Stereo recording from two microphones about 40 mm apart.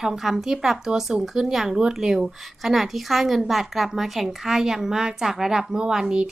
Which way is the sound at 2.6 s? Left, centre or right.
Centre.